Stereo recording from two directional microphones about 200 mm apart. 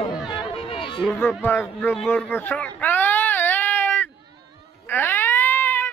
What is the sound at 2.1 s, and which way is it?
Baby cry, 10° left (ahead or behind).